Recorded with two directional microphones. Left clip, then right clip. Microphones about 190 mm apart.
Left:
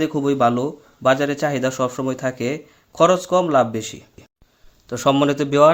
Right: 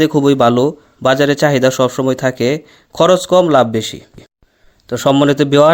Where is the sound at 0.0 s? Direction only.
40° right (ahead or behind).